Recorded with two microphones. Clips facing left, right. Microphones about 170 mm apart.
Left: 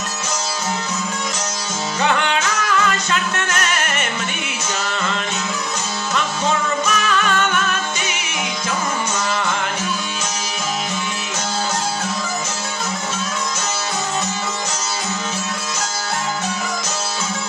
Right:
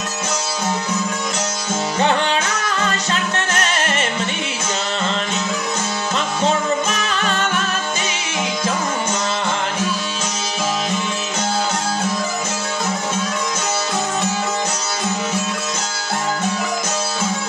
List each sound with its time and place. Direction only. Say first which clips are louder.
2.0 s music: right 1 dB; 30° right (ahead or behind)
6.9 s music: left 2 dB; 30° right (ahead or behind)